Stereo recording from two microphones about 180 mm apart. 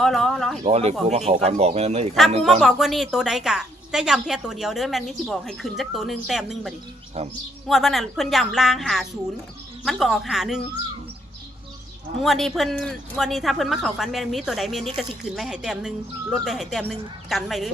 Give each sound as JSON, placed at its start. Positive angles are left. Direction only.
{"t": 0.0, "sound": "speech", "side_deg": 0}
{"t": 0.6, "sound": "speech", "side_deg": -35}
{"t": 2.4, "sound": "a woman's voice", "side_deg": 0}
{"t": 7.2, "sound": "speech", "side_deg": -35}
{"t": 7.7, "sound": "a woman's voice", "side_deg": 0}
{"t": 12.2, "sound": "a woman's voice", "side_deg": 0}